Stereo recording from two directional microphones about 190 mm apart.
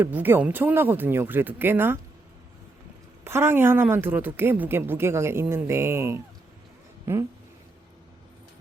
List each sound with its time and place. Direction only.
0.0 s speech: 10° right (ahead or behind)
3.2 s speech: 10° right (ahead or behind)